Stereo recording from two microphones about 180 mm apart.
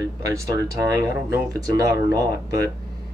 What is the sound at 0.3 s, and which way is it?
Speech, 20° right (ahead or behind).